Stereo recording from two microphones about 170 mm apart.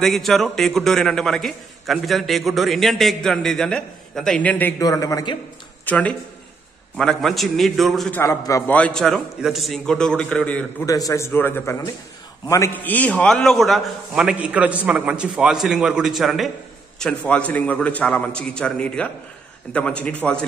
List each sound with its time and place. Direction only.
0.0 s a man's voice: centre (ahead or behind); by 5.4 s 25° left (ahead or behind)
5.9 s a man's voice: 10° left (ahead or behind)
8.2 s a man's voice: 20° left (ahead or behind)
8.7 s a man's voice: 5° left (ahead or behind)
10.9 s a man's voice: 20° left (ahead or behind)